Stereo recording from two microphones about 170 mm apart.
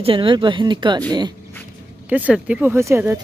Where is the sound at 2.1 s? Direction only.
10° right (ahead or behind).